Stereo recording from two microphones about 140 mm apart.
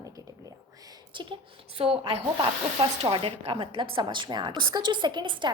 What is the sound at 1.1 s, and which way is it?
A woman's voice, 35° right (ahead or behind).